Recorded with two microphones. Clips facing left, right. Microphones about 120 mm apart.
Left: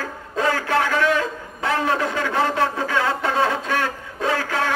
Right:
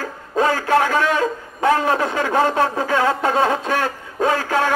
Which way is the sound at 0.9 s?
40° right (ahead or behind).